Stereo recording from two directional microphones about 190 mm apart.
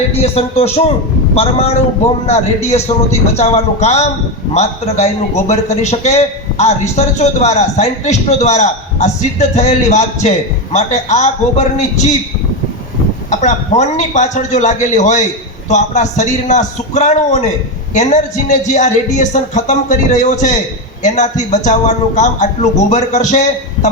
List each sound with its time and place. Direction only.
0.1 s a man's voice: 30° left (ahead or behind)
13.3 s a man's voice: 40° left (ahead or behind)